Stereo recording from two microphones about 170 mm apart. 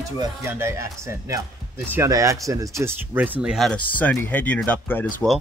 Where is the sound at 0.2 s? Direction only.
15° right (ahead or behind).